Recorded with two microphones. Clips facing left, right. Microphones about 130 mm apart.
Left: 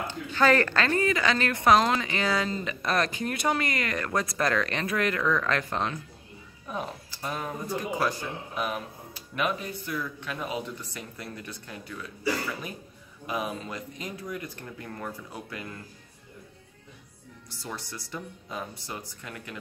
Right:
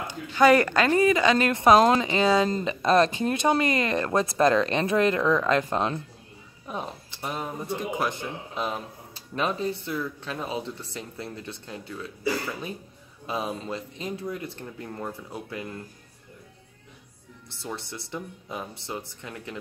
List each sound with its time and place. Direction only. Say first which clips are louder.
0.0 s a woman's voice: right 4 dB; 15° right (ahead or behind)
13.3 s speech: right 2 dB; 25° right (ahead or behind)
17.6 s speech: right 3 dB; 25° right (ahead or behind)